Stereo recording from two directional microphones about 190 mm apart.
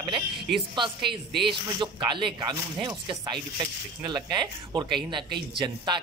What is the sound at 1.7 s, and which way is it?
A man's voice, 25° right (ahead or behind).